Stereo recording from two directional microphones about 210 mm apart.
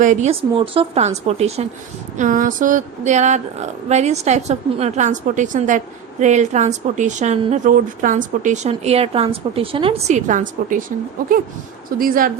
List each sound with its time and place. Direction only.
0.0 s speech: 35° right (ahead or behind)